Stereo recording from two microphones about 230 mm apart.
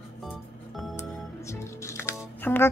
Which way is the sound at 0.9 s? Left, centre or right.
Centre.